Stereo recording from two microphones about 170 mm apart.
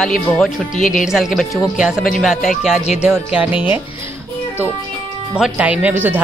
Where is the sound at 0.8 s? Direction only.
50° left (ahead or behind).